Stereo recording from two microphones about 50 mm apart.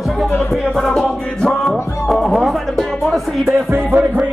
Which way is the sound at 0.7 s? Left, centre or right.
Centre.